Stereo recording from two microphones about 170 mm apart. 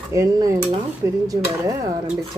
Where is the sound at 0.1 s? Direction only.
20° right (ahead or behind).